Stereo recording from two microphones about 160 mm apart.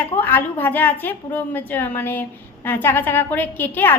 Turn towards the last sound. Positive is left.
turn(degrees=10)  # may be behind; listen again after turning